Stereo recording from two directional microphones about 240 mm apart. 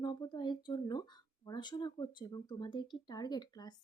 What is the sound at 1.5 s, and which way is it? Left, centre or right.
Speech, centre.